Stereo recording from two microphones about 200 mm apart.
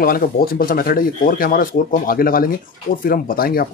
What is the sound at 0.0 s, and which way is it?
Speech, 45° left (ahead or behind).